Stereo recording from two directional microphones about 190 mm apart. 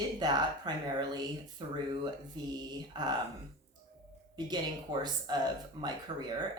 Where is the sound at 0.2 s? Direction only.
20° right (ahead or behind).